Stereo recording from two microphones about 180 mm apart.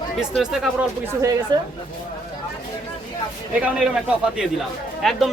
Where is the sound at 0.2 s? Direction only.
Centre (ahead or behind).